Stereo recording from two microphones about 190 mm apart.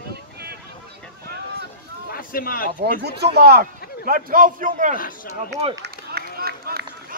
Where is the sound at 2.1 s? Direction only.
50° left (ahead or behind).